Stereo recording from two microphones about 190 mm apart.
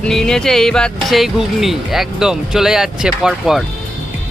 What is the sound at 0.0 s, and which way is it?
Speech, 5° left (ahead or behind).